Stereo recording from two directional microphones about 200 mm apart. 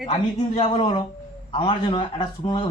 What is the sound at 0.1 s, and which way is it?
Speech, 35° left (ahead or behind).